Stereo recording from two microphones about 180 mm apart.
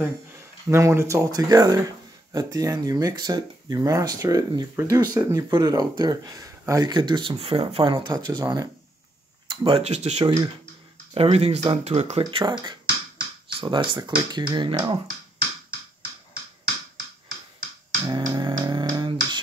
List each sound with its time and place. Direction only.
0.7 s speech: 15° right (ahead or behind); by 10.2 s 40° right (ahead or behind)
10.2 s speech: 20° right (ahead or behind)
11.1 s speech: 35° right (ahead or behind)
18.0 s beatboxing: 25° right (ahead or behind)